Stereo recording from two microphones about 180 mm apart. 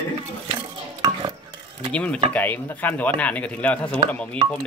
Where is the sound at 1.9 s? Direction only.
5° left (ahead or behind).